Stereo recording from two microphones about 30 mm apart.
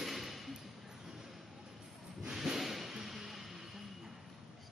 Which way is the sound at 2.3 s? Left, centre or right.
Centre.